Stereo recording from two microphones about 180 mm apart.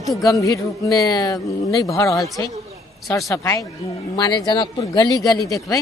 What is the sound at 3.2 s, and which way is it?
Speech, 15° left (ahead or behind).